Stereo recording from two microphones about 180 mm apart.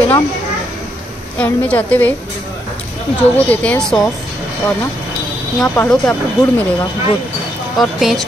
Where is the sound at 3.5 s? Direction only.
10° left (ahead or behind).